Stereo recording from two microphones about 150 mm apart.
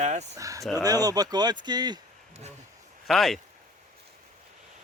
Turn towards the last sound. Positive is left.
turn(degrees=0)  # may be behind; listen again after turning